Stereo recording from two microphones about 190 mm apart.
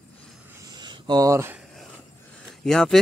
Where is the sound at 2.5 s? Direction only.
Centre (ahead or behind).